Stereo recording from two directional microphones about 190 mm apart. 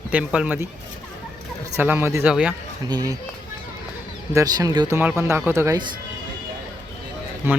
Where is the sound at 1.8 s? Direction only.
10° right (ahead or behind).